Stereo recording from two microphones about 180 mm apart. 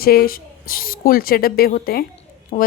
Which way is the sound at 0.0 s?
55° left (ahead or behind).